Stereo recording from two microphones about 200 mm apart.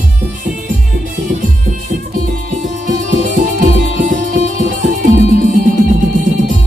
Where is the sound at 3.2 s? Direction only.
40° right (ahead or behind).